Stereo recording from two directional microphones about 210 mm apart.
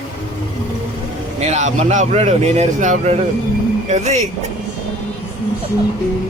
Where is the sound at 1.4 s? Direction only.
35° right (ahead or behind).